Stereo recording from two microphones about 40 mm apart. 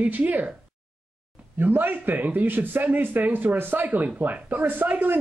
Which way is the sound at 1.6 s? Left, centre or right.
Right.